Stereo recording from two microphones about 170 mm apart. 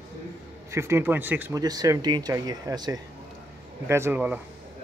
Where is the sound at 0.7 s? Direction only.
15° right (ahead or behind).